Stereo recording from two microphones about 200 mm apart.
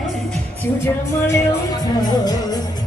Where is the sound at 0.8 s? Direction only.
15° left (ahead or behind).